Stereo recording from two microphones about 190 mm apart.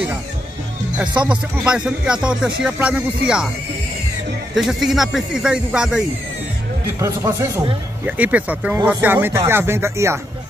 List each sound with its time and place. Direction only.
1.6 s speech: 5° right (ahead or behind)
4.6 s speech: centre (ahead or behind)
7.0 s speech: 15° right (ahead or behind)